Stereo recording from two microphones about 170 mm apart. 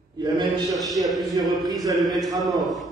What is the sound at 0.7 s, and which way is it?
A man's voice, centre (ahead or behind).